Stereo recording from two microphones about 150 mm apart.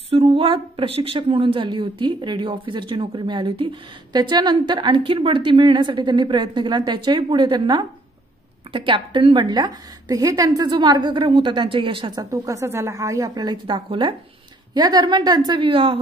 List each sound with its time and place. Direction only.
0.1 s a woman's voice: 40° right (ahead or behind)